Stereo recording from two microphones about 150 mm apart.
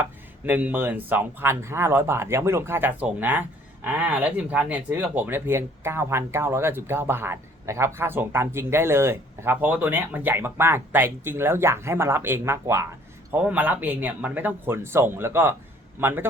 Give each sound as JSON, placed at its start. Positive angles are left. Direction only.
{"t": 0.0, "sound": "speech", "side_deg": -10}